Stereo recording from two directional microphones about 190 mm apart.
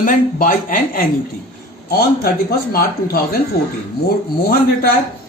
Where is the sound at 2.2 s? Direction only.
55° left (ahead or behind).